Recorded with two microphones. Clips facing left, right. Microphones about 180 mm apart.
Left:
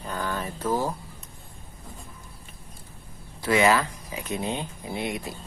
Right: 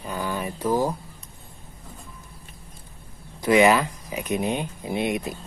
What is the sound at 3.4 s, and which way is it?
Speech, 20° right (ahead or behind).